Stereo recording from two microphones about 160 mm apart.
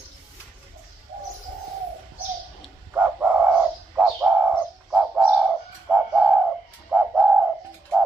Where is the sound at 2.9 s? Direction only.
10° right (ahead or behind).